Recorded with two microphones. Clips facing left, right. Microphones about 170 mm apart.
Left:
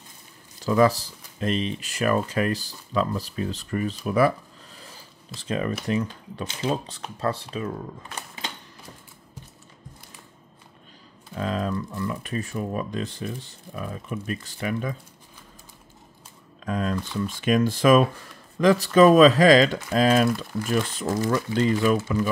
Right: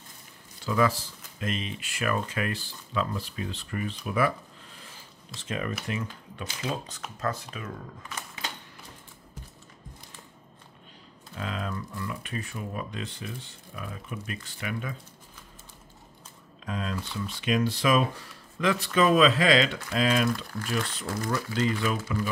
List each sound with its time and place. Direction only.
0.6 s speech: 40° left (ahead or behind)
5.4 s speech: 35° left (ahead or behind)
11.3 s speech: 40° left (ahead or behind)
16.6 s speech: 50° left (ahead or behind)
21.2 s speech: 30° left (ahead or behind)